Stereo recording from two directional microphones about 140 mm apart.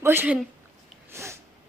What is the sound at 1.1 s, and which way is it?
Sneeze, 20° right (ahead or behind).